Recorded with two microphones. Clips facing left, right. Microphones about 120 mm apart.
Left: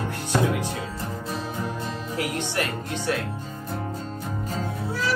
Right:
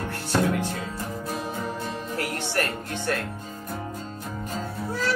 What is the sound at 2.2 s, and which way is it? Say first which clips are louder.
Speech: even; 15° left (ahead or behind).